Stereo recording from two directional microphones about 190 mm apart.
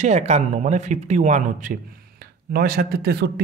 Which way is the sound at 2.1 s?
50° right (ahead or behind).